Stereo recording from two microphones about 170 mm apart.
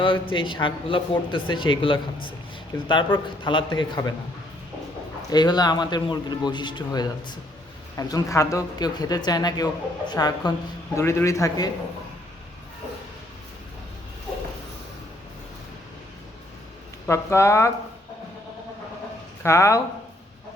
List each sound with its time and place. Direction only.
0.0 s a man's voice: 30° left (ahead or behind)
5.3 s a man's voice: 25° left (ahead or behind)
17.1 s a man's voice: 15° left (ahead or behind)
19.4 s speech: 15° left (ahead or behind)